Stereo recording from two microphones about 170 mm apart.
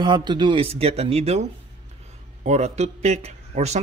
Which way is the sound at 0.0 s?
25° right (ahead or behind).